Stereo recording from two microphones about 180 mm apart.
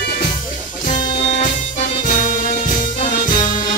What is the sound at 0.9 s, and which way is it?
Music, 40° left (ahead or behind).